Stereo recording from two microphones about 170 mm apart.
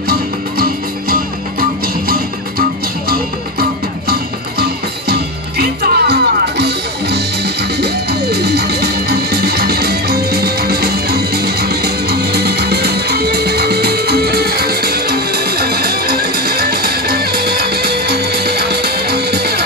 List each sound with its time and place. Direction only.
0.1 s music: 60° right (ahead or behind)
4.1 s music: 70° right (ahead or behind)